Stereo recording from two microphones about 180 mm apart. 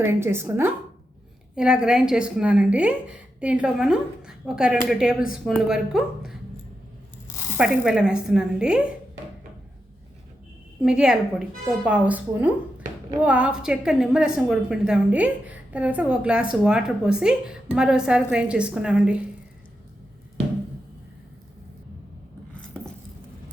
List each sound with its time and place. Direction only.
0.0 s a woman's voice: 15° right (ahead or behind)
7.3 s tearing: 15° left (ahead or behind)
7.5 s a woman's voice: 5° right (ahead or behind)
10.8 s a woman's voice: 5° right (ahead or behind)